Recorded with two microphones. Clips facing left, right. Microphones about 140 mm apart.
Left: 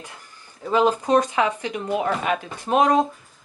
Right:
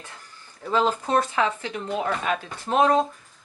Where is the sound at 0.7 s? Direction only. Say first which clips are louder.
Left 4 dB; 15° left (ahead or behind).